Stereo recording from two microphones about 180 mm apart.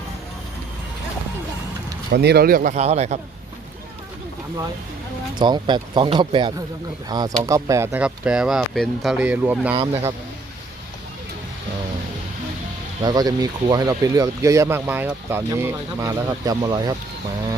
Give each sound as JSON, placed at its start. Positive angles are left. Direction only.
{"t": 2.1, "sound": "speech", "side_deg": -60}
{"t": 2.7, "sound": "a man's voice", "side_deg": -35}
{"t": 5.3, "sound": "speech", "side_deg": -25}
{"t": 13.0, "sound": "speech", "side_deg": -25}